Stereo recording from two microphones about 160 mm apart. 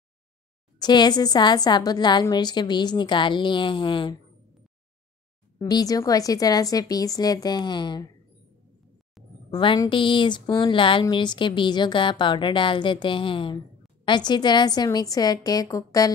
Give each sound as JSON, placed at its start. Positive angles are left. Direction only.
{"t": 0.7, "sound": "a woman's voice", "side_deg": 25}
{"t": 5.6, "sound": "a woman's voice", "side_deg": 25}
{"t": 9.5, "sound": "a woman's voice", "side_deg": 30}